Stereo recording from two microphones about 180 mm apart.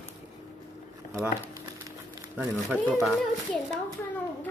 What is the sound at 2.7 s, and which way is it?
Speech, 5° right (ahead or behind).